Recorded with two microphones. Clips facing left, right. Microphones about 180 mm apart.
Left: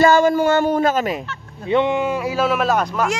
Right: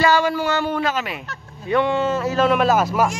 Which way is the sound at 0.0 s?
45° left (ahead or behind).